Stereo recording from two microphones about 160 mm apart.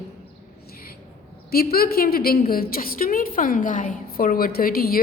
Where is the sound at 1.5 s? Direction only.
70° left (ahead or behind).